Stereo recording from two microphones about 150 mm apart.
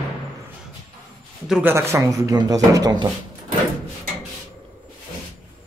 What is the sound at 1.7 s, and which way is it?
Speech, 15° right (ahead or behind).